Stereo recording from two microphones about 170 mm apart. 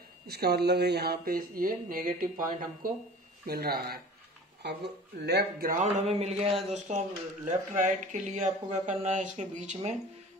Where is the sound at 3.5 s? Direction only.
65° right (ahead or behind).